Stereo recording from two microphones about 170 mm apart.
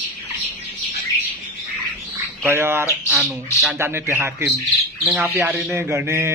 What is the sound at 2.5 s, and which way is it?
Speech, 15° right (ahead or behind).